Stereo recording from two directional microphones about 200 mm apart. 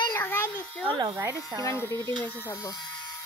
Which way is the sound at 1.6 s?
15° left (ahead or behind).